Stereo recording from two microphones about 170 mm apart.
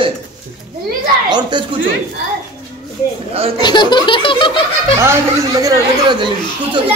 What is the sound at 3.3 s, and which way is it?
Speech, 35° right (ahead or behind).